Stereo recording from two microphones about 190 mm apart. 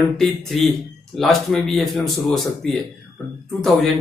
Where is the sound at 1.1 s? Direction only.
Centre (ahead or behind).